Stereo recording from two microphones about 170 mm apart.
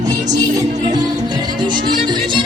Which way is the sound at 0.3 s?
20° right (ahead or behind).